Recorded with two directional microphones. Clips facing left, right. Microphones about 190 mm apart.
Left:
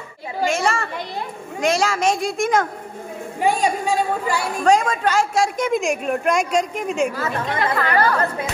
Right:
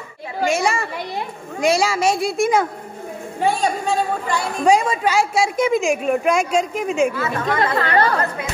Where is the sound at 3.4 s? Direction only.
15° left (ahead or behind).